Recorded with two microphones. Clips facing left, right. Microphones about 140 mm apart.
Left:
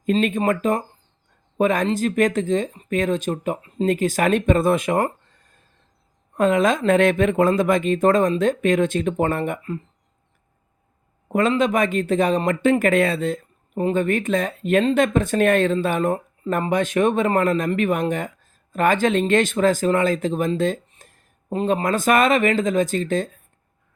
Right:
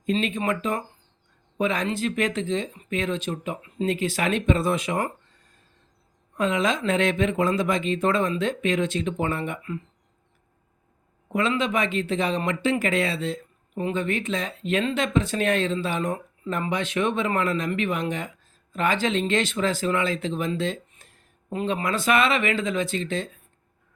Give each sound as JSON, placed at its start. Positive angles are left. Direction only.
{"t": 0.0, "sound": "speech", "side_deg": 50}
{"t": 6.3, "sound": "speech", "side_deg": 50}
{"t": 11.3, "sound": "speech", "side_deg": 45}